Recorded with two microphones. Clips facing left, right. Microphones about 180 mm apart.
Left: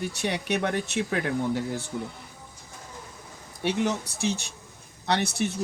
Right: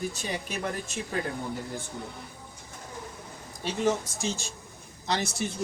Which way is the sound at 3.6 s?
65° left (ahead or behind).